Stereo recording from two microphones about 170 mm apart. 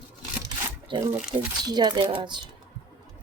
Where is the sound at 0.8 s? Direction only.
30° right (ahead or behind).